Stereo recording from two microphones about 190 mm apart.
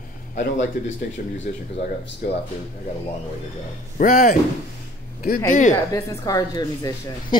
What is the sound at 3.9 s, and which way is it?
Speech, 45° left (ahead or behind).